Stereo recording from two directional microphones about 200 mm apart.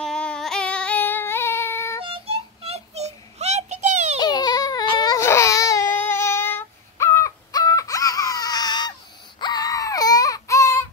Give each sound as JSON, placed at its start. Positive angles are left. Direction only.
{"t": 0.0, "sound": "a sound", "side_deg": 5}
{"t": 2.0, "sound": "child singing", "side_deg": -25}
{"t": 4.2, "sound": "baby cry", "side_deg": 20}